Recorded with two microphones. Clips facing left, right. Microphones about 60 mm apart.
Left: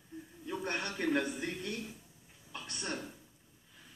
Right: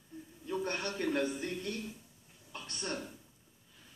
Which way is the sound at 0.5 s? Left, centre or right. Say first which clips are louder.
Right 1 dB; centre.